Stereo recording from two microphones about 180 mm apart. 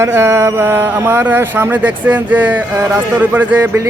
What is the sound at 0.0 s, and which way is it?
Speech, 15° right (ahead or behind).